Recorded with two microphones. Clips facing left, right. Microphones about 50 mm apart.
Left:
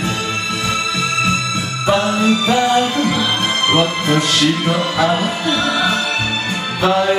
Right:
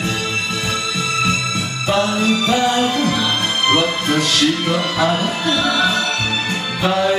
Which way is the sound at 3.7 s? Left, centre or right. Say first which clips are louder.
Left 1 dB; centre.